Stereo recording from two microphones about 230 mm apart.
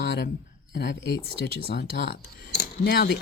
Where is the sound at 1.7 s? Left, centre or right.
Left.